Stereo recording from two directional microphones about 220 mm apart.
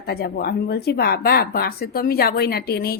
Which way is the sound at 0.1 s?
45° left (ahead or behind).